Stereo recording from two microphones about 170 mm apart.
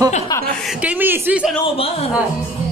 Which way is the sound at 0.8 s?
10° right (ahead or behind).